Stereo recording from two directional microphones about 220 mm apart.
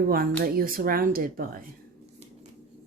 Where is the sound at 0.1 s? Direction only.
40° right (ahead or behind).